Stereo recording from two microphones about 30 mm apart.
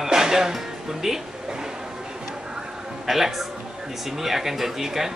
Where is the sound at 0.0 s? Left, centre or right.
Centre.